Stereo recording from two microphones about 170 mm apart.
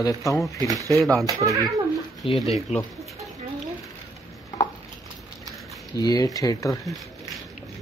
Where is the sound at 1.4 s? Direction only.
20° right (ahead or behind).